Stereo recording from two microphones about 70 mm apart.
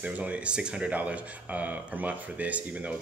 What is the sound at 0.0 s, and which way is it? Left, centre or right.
Speech, centre.